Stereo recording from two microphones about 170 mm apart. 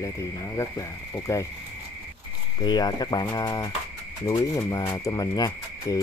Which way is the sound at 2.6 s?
25° left (ahead or behind).